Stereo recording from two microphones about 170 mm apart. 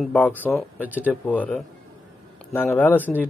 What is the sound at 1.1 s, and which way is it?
Speech, 10° left (ahead or behind).